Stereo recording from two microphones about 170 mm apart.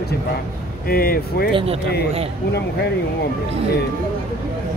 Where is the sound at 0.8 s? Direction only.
60° left (ahead or behind).